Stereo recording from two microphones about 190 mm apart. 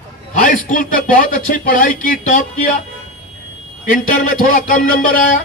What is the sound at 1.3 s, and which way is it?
A man's voice, 45° left (ahead or behind).